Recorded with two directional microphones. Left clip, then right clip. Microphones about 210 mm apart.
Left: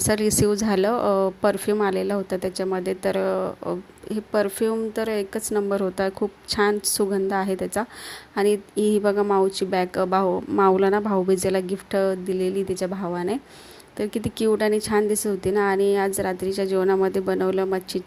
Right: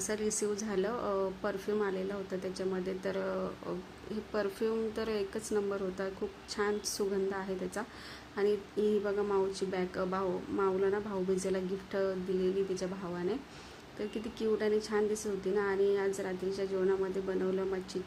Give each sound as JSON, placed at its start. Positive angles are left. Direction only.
{"t": 0.0, "sound": "speech", "side_deg": 40}